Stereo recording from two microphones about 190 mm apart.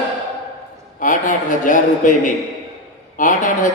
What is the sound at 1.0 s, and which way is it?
A man's voice, 45° left (ahead or behind).